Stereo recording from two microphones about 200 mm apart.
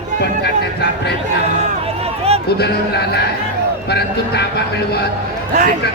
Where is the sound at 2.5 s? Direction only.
55° left (ahead or behind).